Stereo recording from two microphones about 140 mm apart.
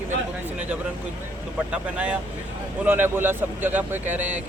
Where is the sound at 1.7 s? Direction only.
10° right (ahead or behind).